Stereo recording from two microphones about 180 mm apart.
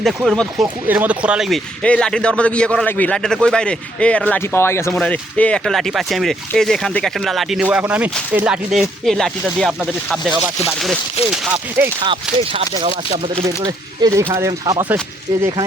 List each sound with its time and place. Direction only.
0.0 s a man's voice: centre (ahead or behind)
12.0 s speech: 30° right (ahead or behind)